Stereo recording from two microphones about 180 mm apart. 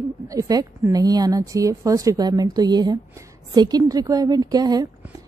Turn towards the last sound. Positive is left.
turn(degrees=-20)  # may be behind; listen again after turning